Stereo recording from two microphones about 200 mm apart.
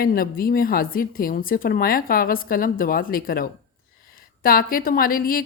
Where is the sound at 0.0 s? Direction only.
45° left (ahead or behind).